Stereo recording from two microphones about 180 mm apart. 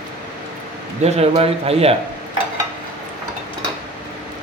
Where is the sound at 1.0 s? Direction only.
35° right (ahead or behind).